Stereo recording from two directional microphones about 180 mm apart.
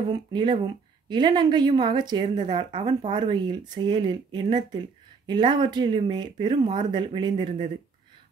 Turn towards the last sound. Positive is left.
turn(degrees=-25)  # may be behind; listen again after turning